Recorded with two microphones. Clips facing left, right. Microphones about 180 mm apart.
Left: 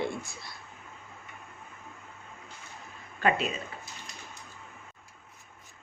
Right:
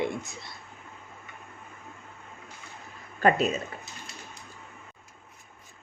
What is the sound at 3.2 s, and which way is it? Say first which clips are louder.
Speech: right 5 dB; 40° right (ahead or behind).